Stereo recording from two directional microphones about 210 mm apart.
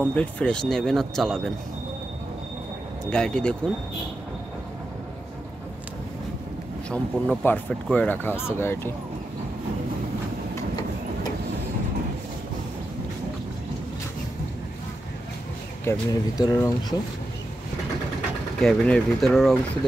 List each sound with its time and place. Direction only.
0.1 s speech: 5° left (ahead or behind)
3.1 s speech: 5° left (ahead or behind)
6.9 s speech: 5° left (ahead or behind)
15.8 s speech: 15° left (ahead or behind)
18.6 s speech: 5° left (ahead or behind)